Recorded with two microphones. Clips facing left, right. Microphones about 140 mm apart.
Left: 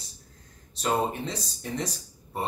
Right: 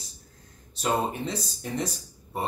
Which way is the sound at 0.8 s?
Centre (ahead or behind).